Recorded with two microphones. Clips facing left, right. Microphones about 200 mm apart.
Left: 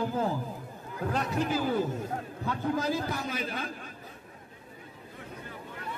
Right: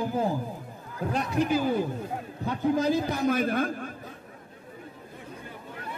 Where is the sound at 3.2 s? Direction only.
50° right (ahead or behind).